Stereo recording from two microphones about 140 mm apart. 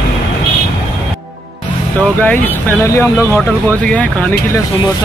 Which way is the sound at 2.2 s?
15° left (ahead or behind).